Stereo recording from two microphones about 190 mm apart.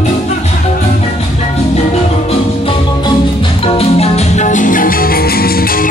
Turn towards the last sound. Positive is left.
turn(degrees=50)  # may be behind; listen again after turning